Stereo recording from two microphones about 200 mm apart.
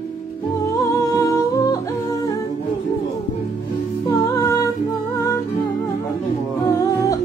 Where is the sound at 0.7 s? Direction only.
15° left (ahead or behind).